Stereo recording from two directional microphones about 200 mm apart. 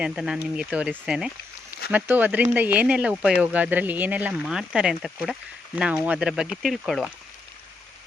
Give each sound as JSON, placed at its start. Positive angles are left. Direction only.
{"t": 0.0, "sound": "speech", "side_deg": -5}